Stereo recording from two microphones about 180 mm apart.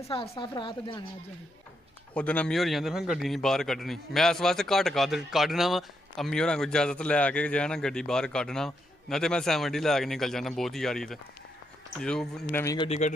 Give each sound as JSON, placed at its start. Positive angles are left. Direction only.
{"t": 0.0, "sound": "speech", "side_deg": 35}
{"t": 2.1, "sound": "a man's voice", "side_deg": 10}
{"t": 12.7, "sound": "a man's voice", "side_deg": 35}